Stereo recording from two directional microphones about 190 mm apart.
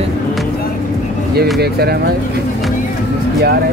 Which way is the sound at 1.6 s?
55° right (ahead or behind).